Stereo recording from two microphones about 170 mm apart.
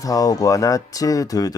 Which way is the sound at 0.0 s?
20° left (ahead or behind).